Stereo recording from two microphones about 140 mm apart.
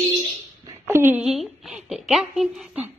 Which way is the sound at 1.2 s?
Centre (ahead or behind).